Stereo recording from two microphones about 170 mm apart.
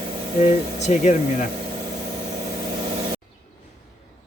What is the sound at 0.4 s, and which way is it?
Speech, 45° left (ahead or behind).